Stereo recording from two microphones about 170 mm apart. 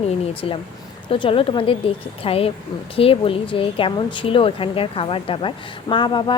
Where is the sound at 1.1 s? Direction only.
30° left (ahead or behind).